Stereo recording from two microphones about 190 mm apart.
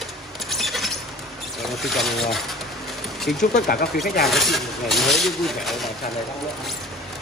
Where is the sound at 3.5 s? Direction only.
50° left (ahead or behind).